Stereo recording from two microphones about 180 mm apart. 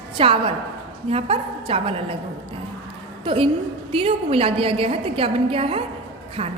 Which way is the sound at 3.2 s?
30° right (ahead or behind).